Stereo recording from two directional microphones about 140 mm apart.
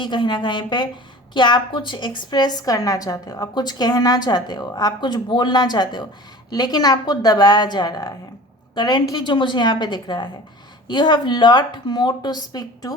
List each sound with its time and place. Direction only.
0.0 s a woman's voice: 35° left (ahead or behind)